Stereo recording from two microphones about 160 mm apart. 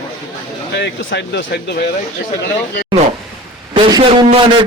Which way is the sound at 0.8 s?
90° left.